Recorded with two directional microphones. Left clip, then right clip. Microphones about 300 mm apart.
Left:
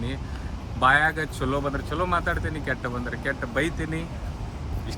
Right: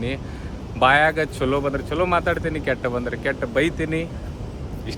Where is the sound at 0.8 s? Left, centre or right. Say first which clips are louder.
Right 4 dB; centre.